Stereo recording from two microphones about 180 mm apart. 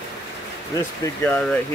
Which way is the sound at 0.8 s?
15° left (ahead or behind).